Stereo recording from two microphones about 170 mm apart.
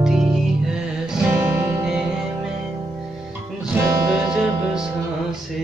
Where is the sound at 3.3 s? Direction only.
10° right (ahead or behind).